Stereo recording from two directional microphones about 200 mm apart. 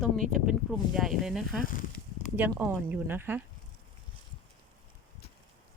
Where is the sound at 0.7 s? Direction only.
Centre (ahead or behind).